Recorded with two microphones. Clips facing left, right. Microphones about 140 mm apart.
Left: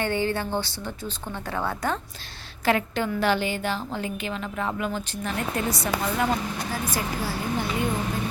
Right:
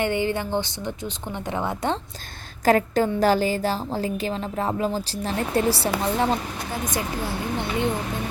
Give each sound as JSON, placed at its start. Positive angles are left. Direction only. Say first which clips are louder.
{"t": 0.0, "sound": "a woman's voice", "louder": "right 2 dB", "side_deg": -15}
{"t": 2.6, "sound": "speech", "louder": "right 5 dB", "side_deg": -40}